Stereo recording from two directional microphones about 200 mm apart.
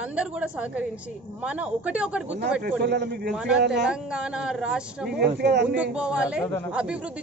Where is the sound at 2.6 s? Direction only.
55° right (ahead or behind).